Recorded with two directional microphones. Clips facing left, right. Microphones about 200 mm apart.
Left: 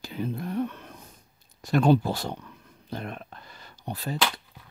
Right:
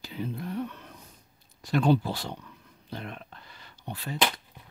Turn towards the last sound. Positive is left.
turn(degrees=40)  # may be behind; listen again after turning